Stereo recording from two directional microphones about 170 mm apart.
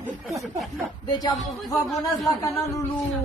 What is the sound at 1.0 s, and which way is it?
Speech, 25° left (ahead or behind).